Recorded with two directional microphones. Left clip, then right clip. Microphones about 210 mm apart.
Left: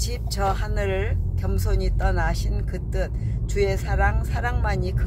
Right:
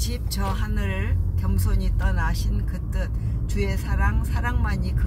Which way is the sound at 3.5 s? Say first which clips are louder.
Left 7 dB; 30° left (ahead or behind).